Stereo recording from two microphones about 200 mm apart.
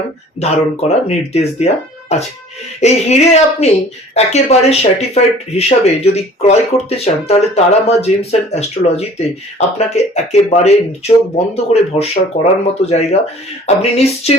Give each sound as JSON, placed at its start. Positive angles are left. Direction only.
{"t": 0.3, "sound": "speech", "side_deg": 30}